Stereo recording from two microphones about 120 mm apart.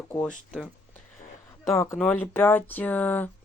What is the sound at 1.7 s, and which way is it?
Speech, 25° left (ahead or behind).